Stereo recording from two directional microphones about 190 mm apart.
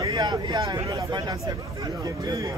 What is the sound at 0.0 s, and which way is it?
Speech, 20° right (ahead or behind).